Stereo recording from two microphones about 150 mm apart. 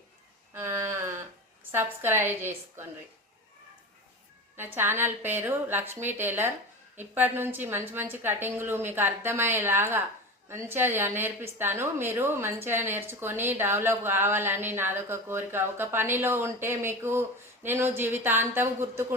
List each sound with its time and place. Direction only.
0.5 s a sound: 15° right (ahead or behind)
1.7 s a woman's voice: 15° right (ahead or behind)
4.5 s a woman's voice: 15° right (ahead or behind)